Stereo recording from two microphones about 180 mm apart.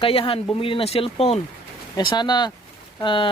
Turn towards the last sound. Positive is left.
turn(degrees=25)  # may be behind; listen again after turning